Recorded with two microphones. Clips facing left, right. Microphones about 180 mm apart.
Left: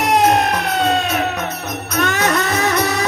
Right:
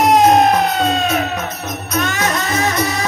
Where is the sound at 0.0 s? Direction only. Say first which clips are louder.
Right 4 dB; 65° left (ahead or behind).